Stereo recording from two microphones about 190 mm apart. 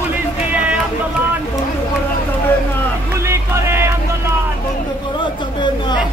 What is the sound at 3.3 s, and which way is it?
Music, 15° right (ahead or behind).